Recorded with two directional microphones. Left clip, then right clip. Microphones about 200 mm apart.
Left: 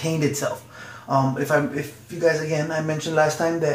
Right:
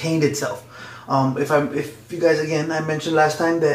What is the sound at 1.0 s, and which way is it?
Speech, centre (ahead or behind).